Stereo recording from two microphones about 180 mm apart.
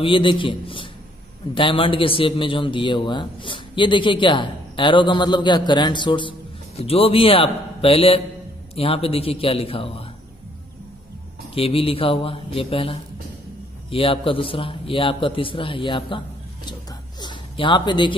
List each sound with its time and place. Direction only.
0.0 s a man's voice: 30° left (ahead or behind)
11.5 s a man's voice: 30° left (ahead or behind)
17.2 s a sound: 25° left (ahead or behind)